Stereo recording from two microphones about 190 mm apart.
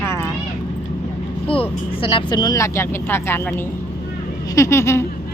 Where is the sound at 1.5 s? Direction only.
30° left (ahead or behind); by 3.5 s 10° left (ahead or behind).